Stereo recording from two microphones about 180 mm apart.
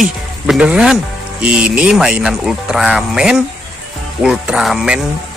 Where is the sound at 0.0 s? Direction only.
5° right (ahead or behind).